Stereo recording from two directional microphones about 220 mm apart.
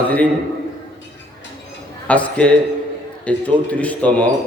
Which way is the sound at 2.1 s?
5° left (ahead or behind).